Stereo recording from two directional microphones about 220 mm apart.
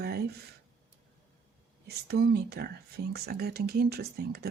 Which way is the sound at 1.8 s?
45° right (ahead or behind).